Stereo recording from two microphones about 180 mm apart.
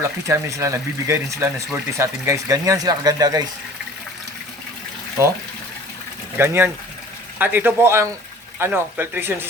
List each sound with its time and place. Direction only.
0.3 s speech: 15° right (ahead or behind)
6.3 s speech: 10° right (ahead or behind)